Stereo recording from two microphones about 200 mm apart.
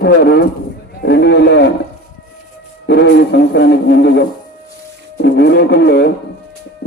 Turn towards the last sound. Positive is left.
turn(degrees=55)  # may be behind; listen again after turning